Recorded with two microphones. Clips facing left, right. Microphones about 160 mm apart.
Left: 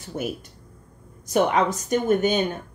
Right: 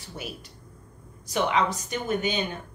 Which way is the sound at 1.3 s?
50° left (ahead or behind).